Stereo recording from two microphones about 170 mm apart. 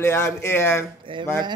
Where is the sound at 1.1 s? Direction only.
30° right (ahead or behind).